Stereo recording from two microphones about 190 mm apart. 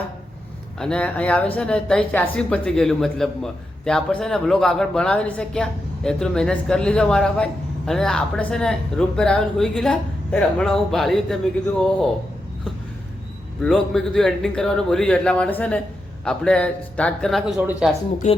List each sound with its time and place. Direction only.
0.8 s speech: 5° left (ahead or behind)
13.6 s speech: 5° left (ahead or behind)
18.2 s speech: 40° left (ahead or behind)